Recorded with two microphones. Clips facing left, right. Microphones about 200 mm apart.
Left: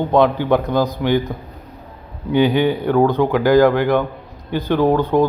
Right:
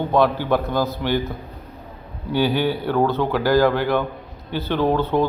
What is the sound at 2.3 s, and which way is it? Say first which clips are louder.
Speech: left 5 dB; 15° left (ahead or behind).